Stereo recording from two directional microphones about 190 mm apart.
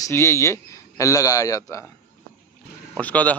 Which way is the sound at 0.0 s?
15° left (ahead or behind).